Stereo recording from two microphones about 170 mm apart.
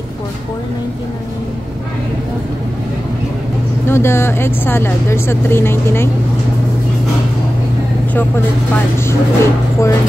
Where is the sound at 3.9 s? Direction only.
15° left (ahead or behind).